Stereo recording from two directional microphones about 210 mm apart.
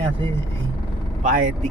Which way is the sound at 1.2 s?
40° right (ahead or behind).